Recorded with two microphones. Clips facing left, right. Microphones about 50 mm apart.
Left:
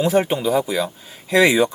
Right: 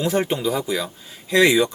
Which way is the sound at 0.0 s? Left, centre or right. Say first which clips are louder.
Left 3 dB; centre.